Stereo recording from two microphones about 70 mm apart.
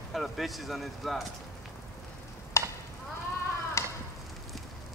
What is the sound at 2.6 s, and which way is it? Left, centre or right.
Stir, left.